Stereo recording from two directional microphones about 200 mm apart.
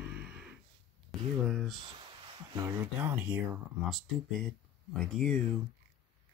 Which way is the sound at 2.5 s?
15° right (ahead or behind).